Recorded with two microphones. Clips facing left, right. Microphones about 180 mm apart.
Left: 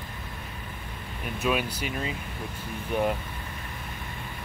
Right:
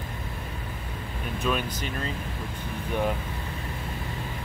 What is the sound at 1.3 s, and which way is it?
Speech, 10° left (ahead or behind).